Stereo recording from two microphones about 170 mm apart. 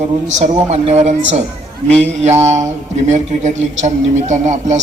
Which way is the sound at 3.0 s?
45° right (ahead or behind).